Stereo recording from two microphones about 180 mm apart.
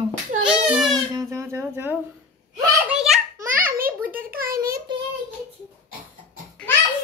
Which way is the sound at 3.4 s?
50° right (ahead or behind).